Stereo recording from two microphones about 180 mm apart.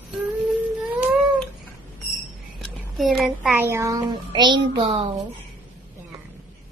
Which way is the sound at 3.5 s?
15° right (ahead or behind).